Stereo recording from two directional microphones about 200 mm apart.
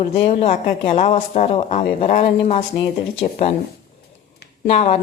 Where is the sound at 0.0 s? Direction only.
30° left (ahead or behind).